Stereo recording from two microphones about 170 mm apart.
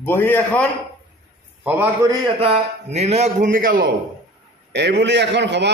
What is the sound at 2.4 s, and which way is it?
A man's voice, 35° right (ahead or behind).